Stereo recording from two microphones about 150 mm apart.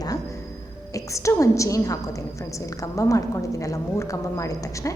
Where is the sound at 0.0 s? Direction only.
25° left (ahead or behind).